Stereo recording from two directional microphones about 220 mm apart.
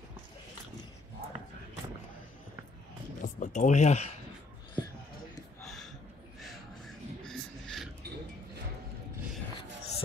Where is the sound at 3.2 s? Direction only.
35° left (ahead or behind).